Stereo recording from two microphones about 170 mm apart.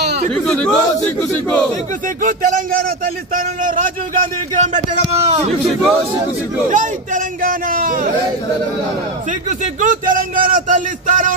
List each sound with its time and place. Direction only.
0.3 s speech: 5° left (ahead or behind)
2.2 s a man's voice: 55° right (ahead or behind)
5.6 s a man's voice: centre (ahead or behind)
6.7 s a man's voice: 50° right (ahead or behind)
9.5 s a man's voice: 50° right (ahead or behind)